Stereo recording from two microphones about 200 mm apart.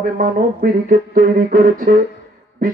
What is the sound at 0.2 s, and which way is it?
Music, 45° right (ahead or behind).